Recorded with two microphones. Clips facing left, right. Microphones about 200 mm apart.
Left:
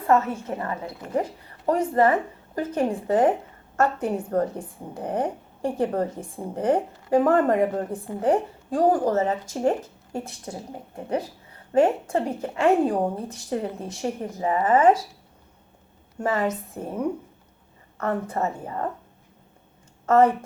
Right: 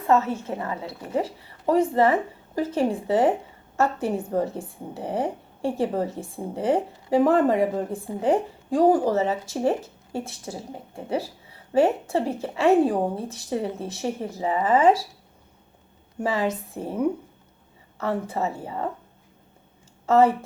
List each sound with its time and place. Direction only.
0.1 s a woman's voice: centre (ahead or behind)
16.4 s a woman's voice: 10° right (ahead or behind)
20.1 s speech: 10° right (ahead or behind)